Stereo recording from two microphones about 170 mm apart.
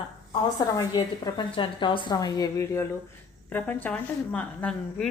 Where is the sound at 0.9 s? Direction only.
30° left (ahead or behind).